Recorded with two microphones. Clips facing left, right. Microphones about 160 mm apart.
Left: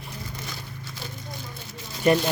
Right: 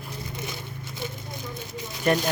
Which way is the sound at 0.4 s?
20° right (ahead or behind).